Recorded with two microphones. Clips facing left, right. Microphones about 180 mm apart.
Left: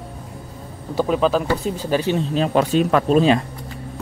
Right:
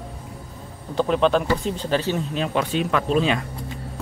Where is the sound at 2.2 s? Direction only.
35° left (ahead or behind).